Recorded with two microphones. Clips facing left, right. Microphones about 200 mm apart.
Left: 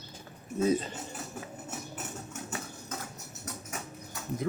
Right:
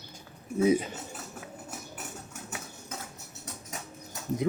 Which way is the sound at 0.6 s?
10° right (ahead or behind).